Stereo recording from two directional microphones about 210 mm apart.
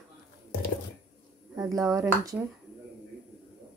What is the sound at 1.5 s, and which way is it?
Speech, 15° right (ahead or behind).